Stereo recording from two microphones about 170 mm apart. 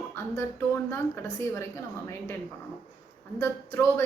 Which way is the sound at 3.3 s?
15° left (ahead or behind).